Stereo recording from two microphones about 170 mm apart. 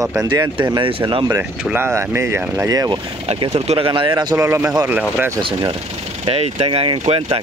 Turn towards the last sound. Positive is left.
turn(degrees=-35)  # may be behind; listen again after turning